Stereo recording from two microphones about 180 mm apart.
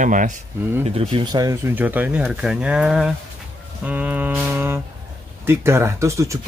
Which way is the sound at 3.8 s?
10° right (ahead or behind).